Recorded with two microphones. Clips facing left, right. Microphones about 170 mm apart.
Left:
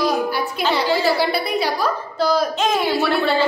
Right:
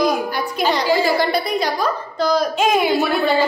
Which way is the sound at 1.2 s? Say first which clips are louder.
Right 1 dB; 10° left (ahead or behind).